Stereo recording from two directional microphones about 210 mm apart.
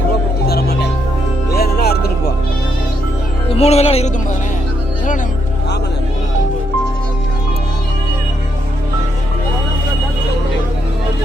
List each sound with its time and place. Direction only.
0.4 s music: 50° left (ahead or behind)
3.5 s speech: 30° left (ahead or behind)